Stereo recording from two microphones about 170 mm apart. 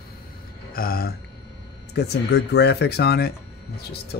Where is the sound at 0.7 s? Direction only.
60° left (ahead or behind).